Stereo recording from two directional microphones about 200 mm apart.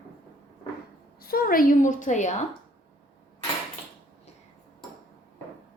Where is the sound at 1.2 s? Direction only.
50° left (ahead or behind).